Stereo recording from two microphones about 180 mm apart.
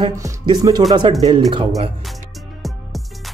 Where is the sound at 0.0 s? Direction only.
20° right (ahead or behind).